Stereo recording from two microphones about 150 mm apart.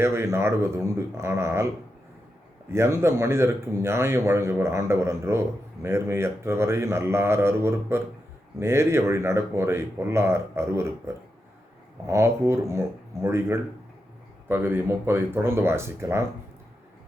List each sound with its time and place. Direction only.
0.0 s speech: 15° right (ahead or behind)
2.6 s speech: 15° right (ahead or behind)